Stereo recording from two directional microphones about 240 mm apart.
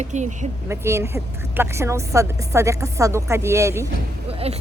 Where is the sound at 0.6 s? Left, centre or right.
Centre.